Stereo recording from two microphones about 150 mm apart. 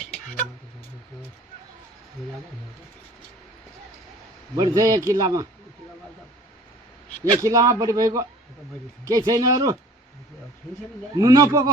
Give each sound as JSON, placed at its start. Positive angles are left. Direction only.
{"t": 4.5, "sound": "a man's voice", "side_deg": -25}
{"t": 7.4, "sound": "a man's voice", "side_deg": -25}
{"t": 11.1, "sound": "a man's voice", "side_deg": -25}